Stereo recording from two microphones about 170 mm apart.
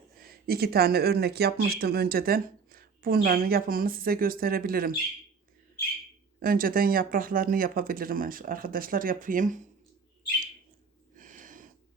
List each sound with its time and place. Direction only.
0.4 s speech: 65° right (ahead or behind)
6.4 s speech: 60° right (ahead or behind)
11.1 s a sound: 50° right (ahead or behind)